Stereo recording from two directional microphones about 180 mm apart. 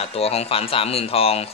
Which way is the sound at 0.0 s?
35° left (ahead or behind).